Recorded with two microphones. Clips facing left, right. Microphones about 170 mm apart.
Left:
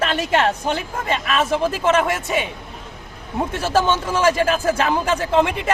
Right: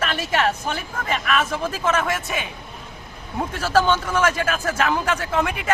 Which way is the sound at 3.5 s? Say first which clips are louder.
Even; 20° left (ahead or behind).